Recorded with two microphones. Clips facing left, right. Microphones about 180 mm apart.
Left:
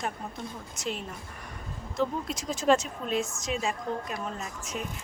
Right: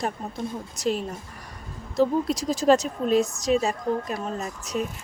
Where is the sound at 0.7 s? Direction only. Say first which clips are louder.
Right 9 dB; 35° right (ahead or behind).